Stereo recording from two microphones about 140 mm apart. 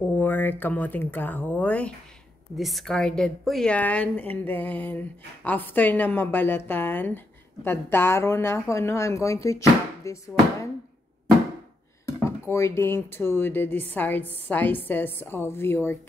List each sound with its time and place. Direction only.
0.2 s a woman's voice: 15° left (ahead or behind)
12.1 s a woman's voice: 20° left (ahead or behind)